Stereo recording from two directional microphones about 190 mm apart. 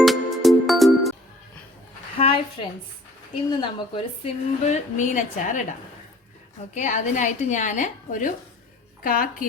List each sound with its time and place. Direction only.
0.0 s music: centre (ahead or behind)
2.1 s a sound: 30° left (ahead or behind)
3.6 s a woman's voice: 30° left (ahead or behind)
6.7 s a woman's voice: 40° left (ahead or behind)